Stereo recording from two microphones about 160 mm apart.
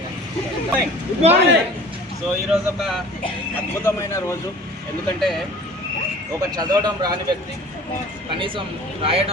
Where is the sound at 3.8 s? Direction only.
15° left (ahead or behind).